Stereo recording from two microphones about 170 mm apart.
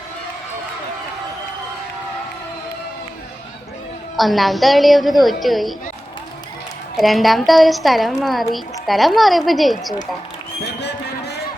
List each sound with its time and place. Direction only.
4.2 s a woman's voice: centre (ahead or behind)
6.9 s a woman's voice: centre (ahead or behind)
10.8 s a sound: 80° left